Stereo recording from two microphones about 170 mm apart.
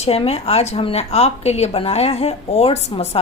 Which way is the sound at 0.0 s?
35° left (ahead or behind).